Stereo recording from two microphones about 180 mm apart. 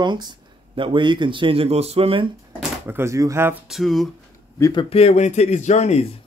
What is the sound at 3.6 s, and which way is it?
Speech, centre (ahead or behind).